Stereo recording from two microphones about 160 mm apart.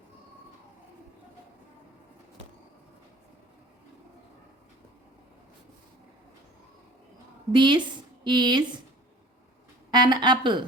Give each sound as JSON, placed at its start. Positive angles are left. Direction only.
{"t": 7.5, "sound": "speech", "side_deg": -30}
{"t": 9.9, "sound": "speech", "side_deg": -30}